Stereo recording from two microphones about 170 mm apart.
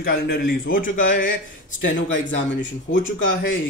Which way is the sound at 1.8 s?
90° left.